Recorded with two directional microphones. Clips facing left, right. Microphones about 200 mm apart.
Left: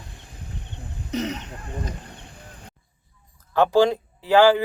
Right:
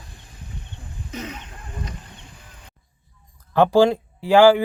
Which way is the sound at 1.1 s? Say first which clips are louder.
Left 7 dB; 40° left (ahead or behind).